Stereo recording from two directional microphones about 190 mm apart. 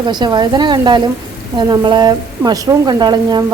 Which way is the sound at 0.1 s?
20° right (ahead or behind).